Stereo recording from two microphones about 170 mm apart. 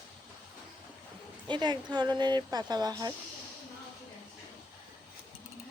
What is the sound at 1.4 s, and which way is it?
Speech, 25° right (ahead or behind).